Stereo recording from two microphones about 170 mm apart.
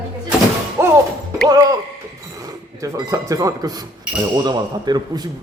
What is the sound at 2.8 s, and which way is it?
Speech, 20° right (ahead or behind).